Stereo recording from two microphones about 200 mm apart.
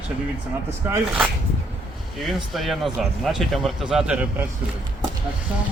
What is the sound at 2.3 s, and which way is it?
A man's voice, centre (ahead or behind).